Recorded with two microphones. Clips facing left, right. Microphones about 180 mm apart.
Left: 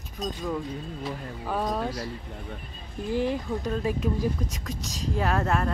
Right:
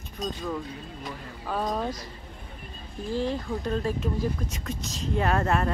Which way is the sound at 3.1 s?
15° left (ahead or behind).